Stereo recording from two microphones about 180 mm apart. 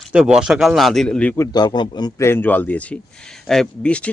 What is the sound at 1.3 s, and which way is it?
Speech, 20° left (ahead or behind).